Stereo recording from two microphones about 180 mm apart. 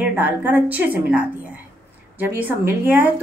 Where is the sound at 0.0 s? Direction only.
10° right (ahead or behind).